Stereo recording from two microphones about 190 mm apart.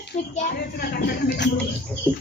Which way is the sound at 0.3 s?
40° left (ahead or behind).